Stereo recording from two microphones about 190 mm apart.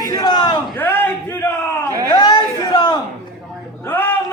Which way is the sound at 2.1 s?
25° left (ahead or behind).